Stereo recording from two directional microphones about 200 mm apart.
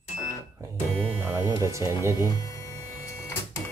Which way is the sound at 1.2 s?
15° right (ahead or behind).